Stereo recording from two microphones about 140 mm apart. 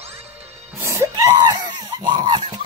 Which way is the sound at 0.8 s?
20° right (ahead or behind).